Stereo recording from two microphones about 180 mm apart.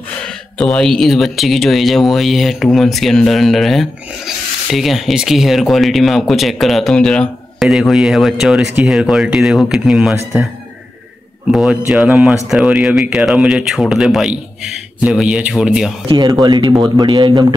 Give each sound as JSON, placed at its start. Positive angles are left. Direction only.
{"t": 0.6, "sound": "speech", "side_deg": 5}
{"t": 11.5, "sound": "speech", "side_deg": -5}
{"t": 16.1, "sound": "speech", "side_deg": -20}